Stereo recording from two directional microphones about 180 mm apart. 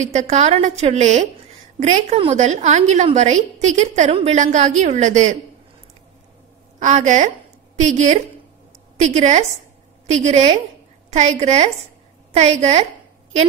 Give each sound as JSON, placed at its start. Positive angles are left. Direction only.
{"t": 0.0, "sound": "a woman's voice", "side_deg": -40}
{"t": 6.8, "sound": "a woman's voice", "side_deg": -40}